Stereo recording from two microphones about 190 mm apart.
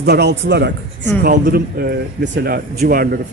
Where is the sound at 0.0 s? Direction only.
60° right (ahead or behind).